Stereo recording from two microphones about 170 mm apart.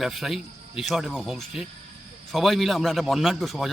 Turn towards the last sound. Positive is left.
turn(degrees=0)  # may be behind; listen again after turning